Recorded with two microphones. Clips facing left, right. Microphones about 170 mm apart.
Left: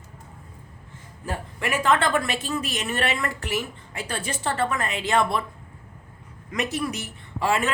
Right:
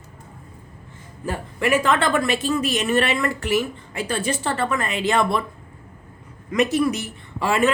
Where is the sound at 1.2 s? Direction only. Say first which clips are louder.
Right 6 dB; 90° right.